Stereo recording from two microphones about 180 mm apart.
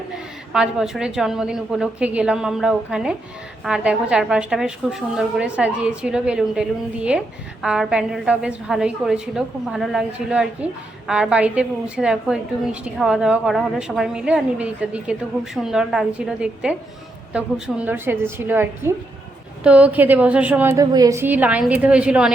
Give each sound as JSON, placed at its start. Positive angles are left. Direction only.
{"t": 0.5, "sound": "a woman's voice", "side_deg": -5}